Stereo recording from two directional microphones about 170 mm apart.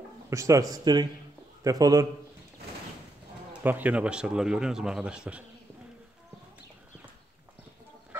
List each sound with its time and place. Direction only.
0.3 s a man's voice: 20° right (ahead or behind)
3.6 s a man's voice: 10° right (ahead or behind)